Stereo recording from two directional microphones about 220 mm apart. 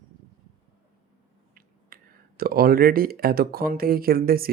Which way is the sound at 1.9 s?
40° right (ahead or behind).